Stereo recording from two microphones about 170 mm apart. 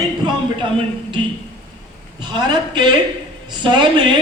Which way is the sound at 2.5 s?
25° right (ahead or behind).